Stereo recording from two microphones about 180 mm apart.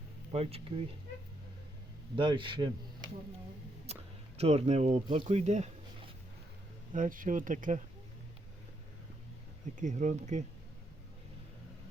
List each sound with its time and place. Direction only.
0.3 s speech: 30° right (ahead or behind)
2.1 s speech: 25° right (ahead or behind)
3.9 s a sound: 35° right (ahead or behind)
4.4 s speech: 35° right (ahead or behind)
9.7 s speech: 40° right (ahead or behind)